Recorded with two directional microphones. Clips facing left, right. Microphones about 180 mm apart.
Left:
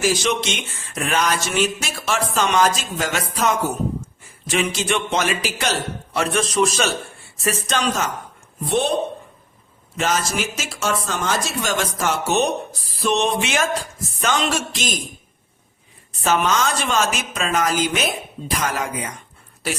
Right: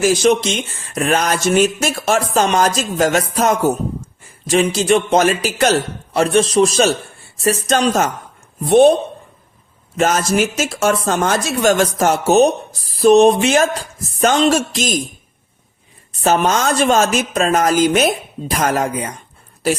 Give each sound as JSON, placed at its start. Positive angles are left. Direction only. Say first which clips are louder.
{"t": 0.0, "sound": "speech", "louder": "right 7 dB", "side_deg": -45}
{"t": 6.3, "sound": "speech", "louder": "right 7 dB", "side_deg": -35}
{"t": 10.0, "sound": "speech", "louder": "right 7 dB", "side_deg": -50}
{"t": 16.2, "sound": "speech", "louder": "right 4 dB", "side_deg": -40}